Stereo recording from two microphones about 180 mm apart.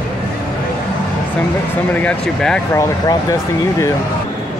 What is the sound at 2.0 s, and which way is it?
Speech, 5° left (ahead or behind).